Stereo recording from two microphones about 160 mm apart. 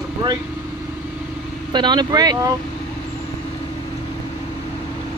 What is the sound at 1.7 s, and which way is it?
Speech, 25° right (ahead or behind).